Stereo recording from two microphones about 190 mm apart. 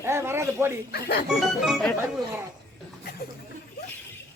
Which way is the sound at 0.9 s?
55° left (ahead or behind).